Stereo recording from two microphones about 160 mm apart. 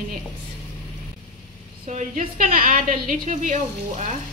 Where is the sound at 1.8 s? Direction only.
50° right (ahead or behind).